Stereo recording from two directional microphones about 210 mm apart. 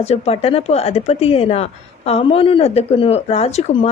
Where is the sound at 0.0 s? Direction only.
30° left (ahead or behind).